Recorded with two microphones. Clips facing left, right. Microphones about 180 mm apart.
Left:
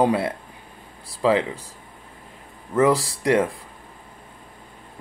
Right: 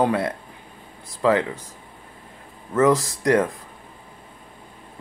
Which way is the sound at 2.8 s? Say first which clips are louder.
Right 2 dB; 30° left (ahead or behind).